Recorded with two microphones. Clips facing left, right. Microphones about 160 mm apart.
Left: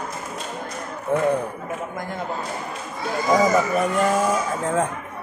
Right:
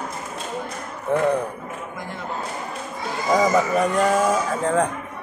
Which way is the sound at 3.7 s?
5° left (ahead or behind).